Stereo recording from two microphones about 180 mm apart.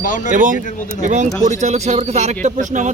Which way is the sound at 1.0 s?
40° right (ahead or behind).